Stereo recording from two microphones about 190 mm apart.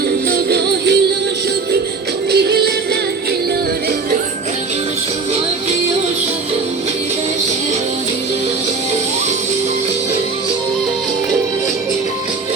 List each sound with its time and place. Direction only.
0.3 s music: 60° right (ahead or behind)
2.3 s music: 60° right (ahead or behind)